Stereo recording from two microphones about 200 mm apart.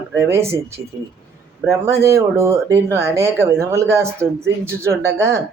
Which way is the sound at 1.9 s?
15° right (ahead or behind).